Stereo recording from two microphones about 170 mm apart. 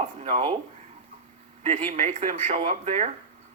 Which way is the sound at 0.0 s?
40° right (ahead or behind).